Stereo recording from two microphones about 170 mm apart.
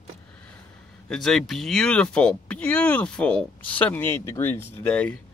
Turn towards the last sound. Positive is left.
turn(degrees=10)  # may be behind; listen again after turning